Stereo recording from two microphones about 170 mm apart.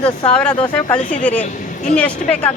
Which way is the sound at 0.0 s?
30° left (ahead or behind).